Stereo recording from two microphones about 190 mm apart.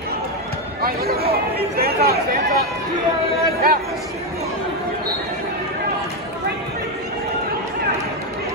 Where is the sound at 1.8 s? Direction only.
55° right (ahead or behind).